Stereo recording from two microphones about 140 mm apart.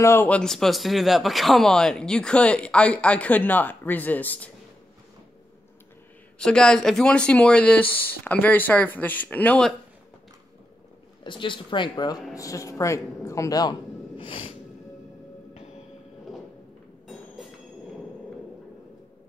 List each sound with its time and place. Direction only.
0.0 s speech: 15° left (ahead or behind)
0.4 s speech: 5° left (ahead or behind)
6.3 s speech: 5° left (ahead or behind)
11.2 s speech: 35° left (ahead or behind)
14.1 s snort: 40° left (ahead or behind)